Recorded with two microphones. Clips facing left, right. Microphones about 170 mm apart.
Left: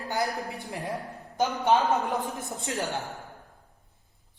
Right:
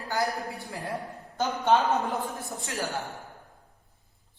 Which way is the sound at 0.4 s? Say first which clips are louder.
Left 1 dB; 20° left (ahead or behind).